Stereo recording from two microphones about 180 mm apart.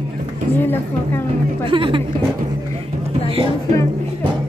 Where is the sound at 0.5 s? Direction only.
10° left (ahead or behind).